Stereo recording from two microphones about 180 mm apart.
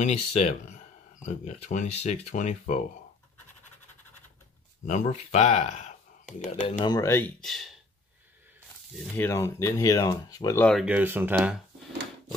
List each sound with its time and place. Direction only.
0.0 s speech: 35° left (ahead or behind)
4.8 s speech: 40° left (ahead or behind)
6.8 s speech: 20° left (ahead or behind); by 7.7 s centre (ahead or behind)
9.1 s speech: 10° left (ahead or behind)
10.6 s speech: 5° left (ahead or behind)
10.9 s speech: 10° right (ahead or behind)